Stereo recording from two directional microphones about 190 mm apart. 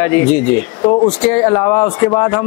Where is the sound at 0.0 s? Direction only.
10° left (ahead or behind).